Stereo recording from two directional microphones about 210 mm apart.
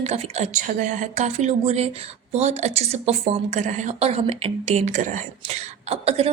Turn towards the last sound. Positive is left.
turn(degrees=-30)  # may be behind; listen again after turning